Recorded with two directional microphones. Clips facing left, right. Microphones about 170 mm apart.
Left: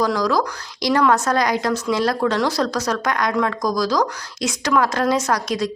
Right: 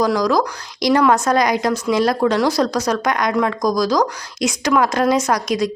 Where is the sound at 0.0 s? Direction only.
15° right (ahead or behind).